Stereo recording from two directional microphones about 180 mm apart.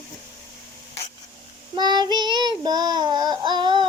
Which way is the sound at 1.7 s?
25° right (ahead or behind).